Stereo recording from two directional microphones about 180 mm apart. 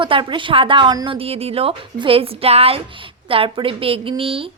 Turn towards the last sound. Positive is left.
turn(degrees=-30)  # may be behind; listen again after turning